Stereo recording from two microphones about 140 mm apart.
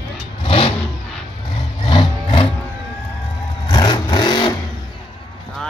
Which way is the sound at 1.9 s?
40° left (ahead or behind).